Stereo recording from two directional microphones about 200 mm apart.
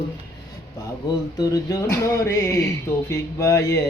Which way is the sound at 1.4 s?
15° left (ahead or behind).